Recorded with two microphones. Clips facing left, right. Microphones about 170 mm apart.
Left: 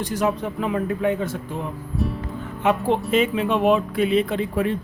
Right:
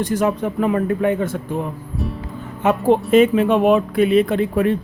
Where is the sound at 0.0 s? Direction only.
50° right (ahead or behind).